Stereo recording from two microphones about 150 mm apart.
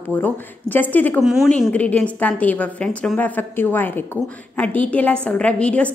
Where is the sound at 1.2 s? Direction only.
5° right (ahead or behind).